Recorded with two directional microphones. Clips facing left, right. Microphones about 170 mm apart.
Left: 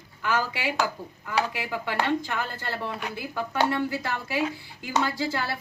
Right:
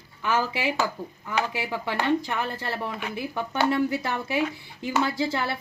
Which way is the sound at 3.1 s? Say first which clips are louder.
Right 1 dB; 25° right (ahead or behind).